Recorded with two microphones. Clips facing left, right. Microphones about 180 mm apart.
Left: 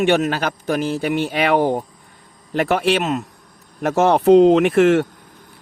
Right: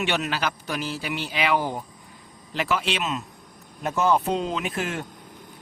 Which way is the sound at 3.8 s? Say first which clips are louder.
Left 9 dB; 80° left.